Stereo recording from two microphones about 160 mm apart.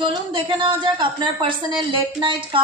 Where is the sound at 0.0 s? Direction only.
30° right (ahead or behind).